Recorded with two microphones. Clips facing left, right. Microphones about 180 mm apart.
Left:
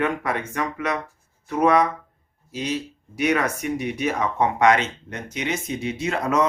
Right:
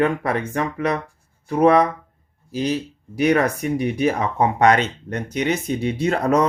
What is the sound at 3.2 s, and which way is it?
Speech, 35° right (ahead or behind).